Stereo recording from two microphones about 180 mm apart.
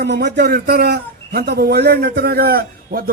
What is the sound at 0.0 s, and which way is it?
A man's voice, 70° right (ahead or behind).